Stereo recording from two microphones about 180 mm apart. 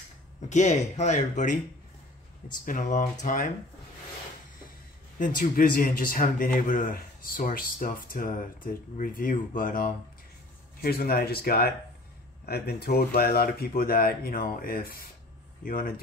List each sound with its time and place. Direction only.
0.4 s speech: 40° left (ahead or behind)
2.6 s a man's voice: 50° left (ahead or behind)
5.2 s a man's voice: 50° left (ahead or behind)